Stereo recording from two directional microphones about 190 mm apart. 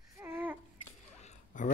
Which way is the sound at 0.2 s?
10° right (ahead or behind).